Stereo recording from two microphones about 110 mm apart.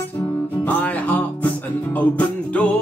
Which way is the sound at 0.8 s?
15° left (ahead or behind).